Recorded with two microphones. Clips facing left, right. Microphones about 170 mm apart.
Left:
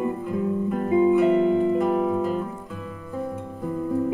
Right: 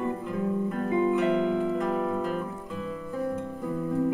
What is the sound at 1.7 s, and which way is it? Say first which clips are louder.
Music: left 6 dB; 10° left (ahead or behind).